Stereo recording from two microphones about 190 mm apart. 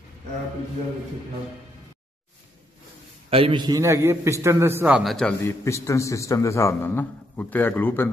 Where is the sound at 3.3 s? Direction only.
30° right (ahead or behind); by 5.3 s centre (ahead or behind).